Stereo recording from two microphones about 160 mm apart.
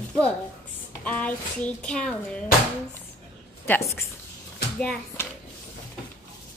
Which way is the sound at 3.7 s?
15° left (ahead or behind).